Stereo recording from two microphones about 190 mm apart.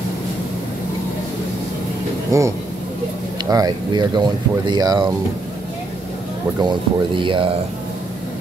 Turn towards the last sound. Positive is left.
turn(degrees=-25)  # may be behind; listen again after turning